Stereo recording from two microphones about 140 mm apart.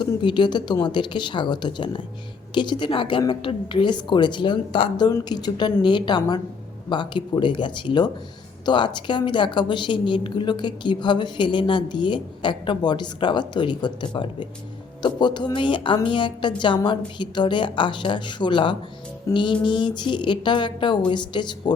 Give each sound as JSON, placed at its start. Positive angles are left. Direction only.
{"t": 0.0, "sound": "a woman's voice", "side_deg": 35}